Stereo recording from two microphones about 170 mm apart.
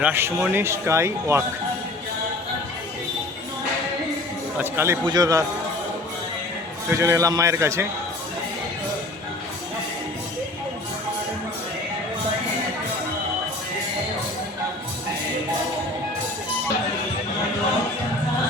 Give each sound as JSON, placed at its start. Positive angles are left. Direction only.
{"t": 0.0, "sound": "speech", "side_deg": -15}
{"t": 4.5, "sound": "speech", "side_deg": -15}
{"t": 5.0, "sound": "a man's voice", "side_deg": -25}
{"t": 6.9, "sound": "speech", "side_deg": -20}